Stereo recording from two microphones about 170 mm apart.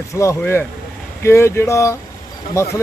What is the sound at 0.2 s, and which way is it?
Speech, 15° left (ahead or behind).